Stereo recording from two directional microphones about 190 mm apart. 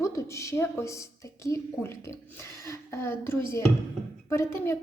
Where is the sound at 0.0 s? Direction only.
15° left (ahead or behind).